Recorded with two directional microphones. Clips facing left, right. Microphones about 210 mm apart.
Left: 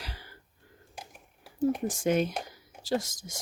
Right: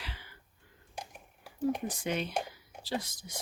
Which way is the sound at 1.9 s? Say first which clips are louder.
Left 7 dB; 45° left (ahead or behind).